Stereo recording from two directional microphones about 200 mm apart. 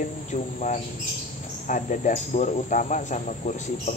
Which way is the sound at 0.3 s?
35° left (ahead or behind).